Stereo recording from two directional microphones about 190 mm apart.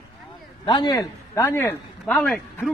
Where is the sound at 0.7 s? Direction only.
25° left (ahead or behind).